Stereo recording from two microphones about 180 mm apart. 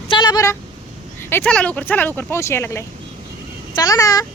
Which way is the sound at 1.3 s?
10° left (ahead or behind).